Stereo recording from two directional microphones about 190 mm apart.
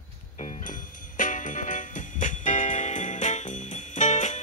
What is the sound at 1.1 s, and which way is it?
Music, 40° left (ahead or behind).